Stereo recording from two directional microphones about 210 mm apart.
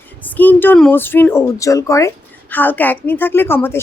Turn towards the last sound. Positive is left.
turn(degrees=10)  # may be behind; listen again after turning